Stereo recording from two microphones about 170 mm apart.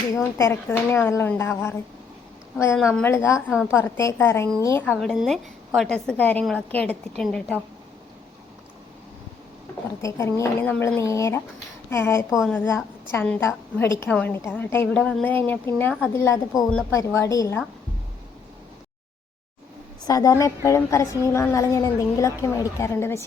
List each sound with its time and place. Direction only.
0.1 s a woman's voice: 20° left (ahead or behind)
2.9 s a woman's voice: 15° left (ahead or behind)
3.5 s a woman's voice: 5° right (ahead or behind)
3.8 s a woman's voice: 15° left (ahead or behind)
10.0 s a woman's voice: 20° left (ahead or behind)
20.1 s a woman's voice: 20° left (ahead or behind)